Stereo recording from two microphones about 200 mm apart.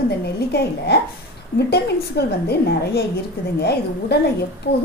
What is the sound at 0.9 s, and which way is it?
A woman's voice, 55° left (ahead or behind).